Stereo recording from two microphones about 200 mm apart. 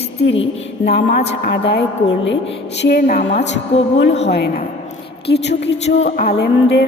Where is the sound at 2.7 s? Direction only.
55° left (ahead or behind).